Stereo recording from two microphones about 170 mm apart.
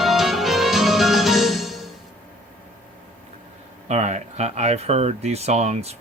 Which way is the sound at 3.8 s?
40° right (ahead or behind).